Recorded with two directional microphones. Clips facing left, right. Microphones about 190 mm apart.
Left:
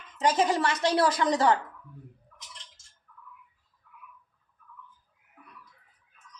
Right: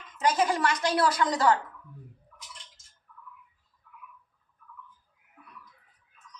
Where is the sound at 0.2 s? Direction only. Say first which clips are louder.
Left 1 dB; 25° left (ahead or behind).